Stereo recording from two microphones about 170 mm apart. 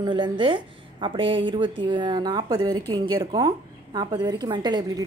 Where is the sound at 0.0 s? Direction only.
25° right (ahead or behind).